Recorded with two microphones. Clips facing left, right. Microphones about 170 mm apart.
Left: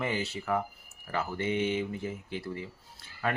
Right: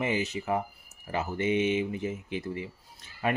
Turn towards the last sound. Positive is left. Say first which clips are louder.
# right 3 dB
turn(degrees=-20)  # may be behind; listen again after turning